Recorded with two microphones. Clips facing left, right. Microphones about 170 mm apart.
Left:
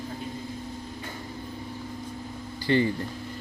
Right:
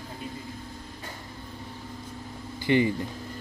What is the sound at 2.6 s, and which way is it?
Speech, 15° right (ahead or behind).